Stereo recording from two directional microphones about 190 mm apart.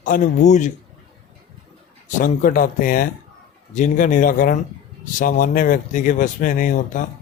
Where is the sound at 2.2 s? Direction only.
45° left (ahead or behind).